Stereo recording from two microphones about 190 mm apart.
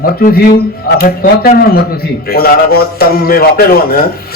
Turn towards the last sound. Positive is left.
turn(degrees=55)  # may be behind; listen again after turning